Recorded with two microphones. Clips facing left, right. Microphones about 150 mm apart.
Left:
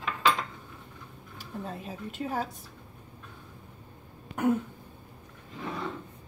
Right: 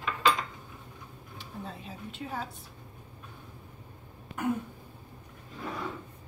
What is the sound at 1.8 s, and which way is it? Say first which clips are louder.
Speech: left 5 dB; 45° left (ahead or behind).